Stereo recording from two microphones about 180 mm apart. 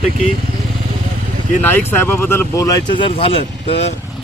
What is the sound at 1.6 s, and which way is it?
Speech, 10° left (ahead or behind).